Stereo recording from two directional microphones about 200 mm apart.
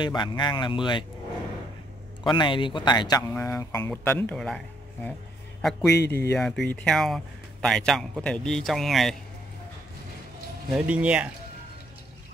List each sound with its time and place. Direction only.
0.0 s speech: 20° left (ahead or behind)
2.2 s speech: 25° left (ahead or behind); by 4.6 s 5° left (ahead or behind)
5.6 s a man's voice: centre (ahead or behind)
10.7 s speech: 5° right (ahead or behind)